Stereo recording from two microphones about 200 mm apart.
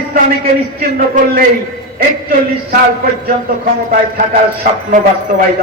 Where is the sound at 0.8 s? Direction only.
45° right (ahead or behind).